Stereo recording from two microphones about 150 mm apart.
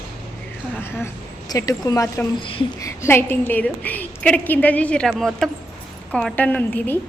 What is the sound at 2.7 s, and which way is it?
A woman's voice, 20° left (ahead or behind).